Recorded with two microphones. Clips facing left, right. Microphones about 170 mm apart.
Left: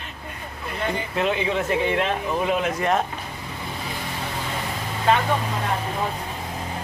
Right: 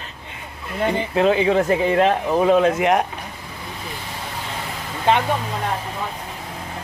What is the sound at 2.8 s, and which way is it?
Speech, 15° right (ahead or behind).